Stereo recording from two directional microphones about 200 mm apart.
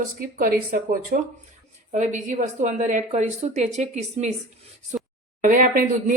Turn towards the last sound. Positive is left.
turn(degrees=-40)  # may be behind; listen again after turning